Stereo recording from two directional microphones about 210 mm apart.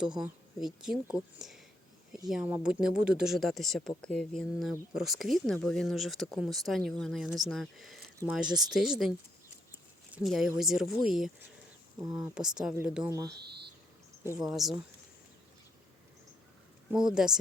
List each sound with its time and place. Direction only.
0.2 s speech: 5° right (ahead or behind)
11.9 s speech: 20° right (ahead or behind)
12.3 s speech: 5° right (ahead or behind)
13.1 s speech: 15° right (ahead or behind)
13.4 s speech: 50° right (ahead or behind)
14.3 s speech: centre (ahead or behind)
16.9 s speech: 5° right (ahead or behind)